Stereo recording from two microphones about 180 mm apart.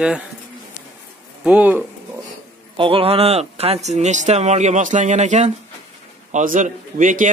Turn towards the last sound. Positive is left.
turn(degrees=-45)  # may be behind; listen again after turning